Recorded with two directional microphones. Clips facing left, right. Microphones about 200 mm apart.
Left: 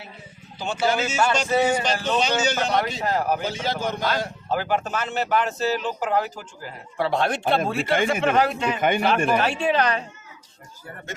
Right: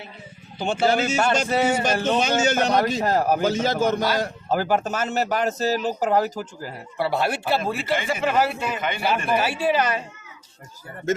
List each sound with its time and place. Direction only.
0.6 s speech: 55° right (ahead or behind)
6.9 s a man's voice: 5° right (ahead or behind)